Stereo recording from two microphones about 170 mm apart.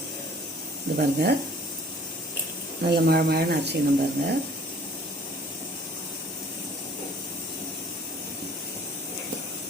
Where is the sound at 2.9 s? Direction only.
70° right (ahead or behind).